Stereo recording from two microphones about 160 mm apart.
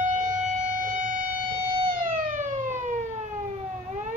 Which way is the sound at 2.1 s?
50° right (ahead or behind).